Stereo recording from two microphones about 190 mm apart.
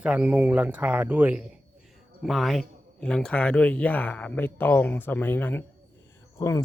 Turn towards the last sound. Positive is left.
turn(degrees=15)  # may be behind; listen again after turning